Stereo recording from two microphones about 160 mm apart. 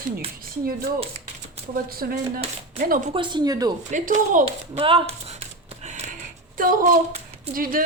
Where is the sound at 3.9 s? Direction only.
55° right (ahead or behind).